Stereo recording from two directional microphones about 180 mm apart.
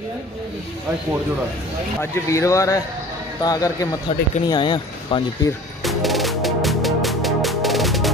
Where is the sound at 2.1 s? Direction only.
15° left (ahead or behind).